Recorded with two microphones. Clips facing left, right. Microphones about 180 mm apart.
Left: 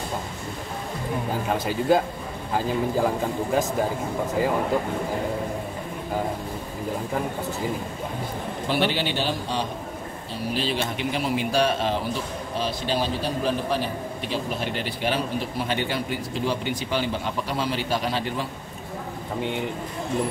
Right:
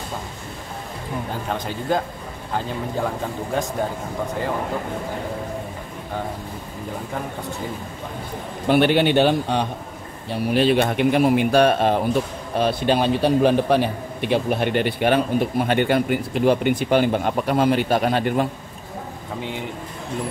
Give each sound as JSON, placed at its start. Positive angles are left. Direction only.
{"t": 1.5, "sound": "speech", "side_deg": 5}
{"t": 3.5, "sound": "speech", "side_deg": 5}
{"t": 8.6, "sound": "a man's voice", "side_deg": -55}